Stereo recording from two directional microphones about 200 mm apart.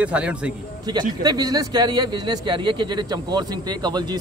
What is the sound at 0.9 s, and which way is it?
Speech, 20° right (ahead or behind).